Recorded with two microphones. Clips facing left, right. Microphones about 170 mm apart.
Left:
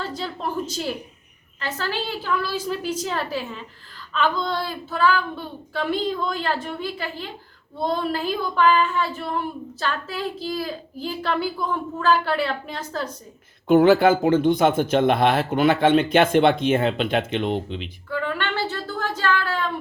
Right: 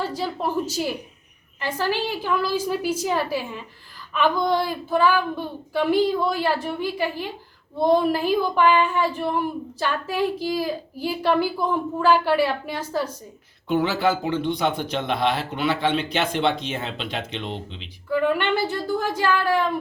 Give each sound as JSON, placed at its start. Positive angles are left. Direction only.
{"t": 0.0, "sound": "a woman's voice", "side_deg": -10}
{"t": 13.7, "sound": "speech", "side_deg": 50}
{"t": 18.1, "sound": "a woman's voice", "side_deg": -15}